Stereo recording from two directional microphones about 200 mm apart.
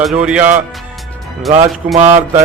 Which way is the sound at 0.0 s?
5° right (ahead or behind).